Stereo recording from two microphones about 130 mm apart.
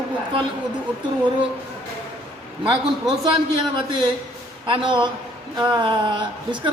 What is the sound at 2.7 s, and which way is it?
Speech, 35° right (ahead or behind).